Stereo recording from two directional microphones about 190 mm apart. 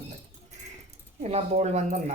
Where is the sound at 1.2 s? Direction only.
35° right (ahead or behind).